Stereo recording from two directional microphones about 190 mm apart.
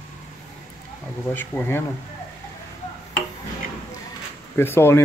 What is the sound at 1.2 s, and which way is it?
Speech, 10° left (ahead or behind).